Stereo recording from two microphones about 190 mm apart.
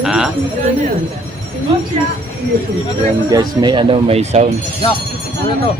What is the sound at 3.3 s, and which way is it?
Speech, 20° right (ahead or behind).